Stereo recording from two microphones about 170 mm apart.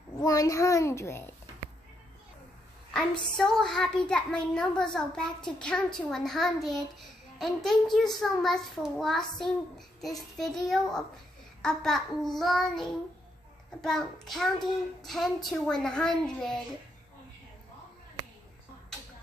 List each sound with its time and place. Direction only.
0.2 s a child's voice: 20° left (ahead or behind)
2.9 s a child's voice: 5° left (ahead or behind)
13.8 s a child's voice: centre (ahead or behind)